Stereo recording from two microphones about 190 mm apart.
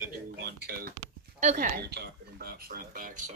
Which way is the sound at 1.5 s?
55° right (ahead or behind).